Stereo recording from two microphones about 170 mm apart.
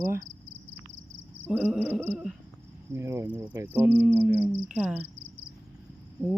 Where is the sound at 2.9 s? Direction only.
15° right (ahead or behind).